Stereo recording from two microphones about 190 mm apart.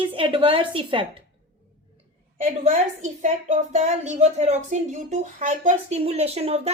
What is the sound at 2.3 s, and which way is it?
A woman's voice, 35° right (ahead or behind).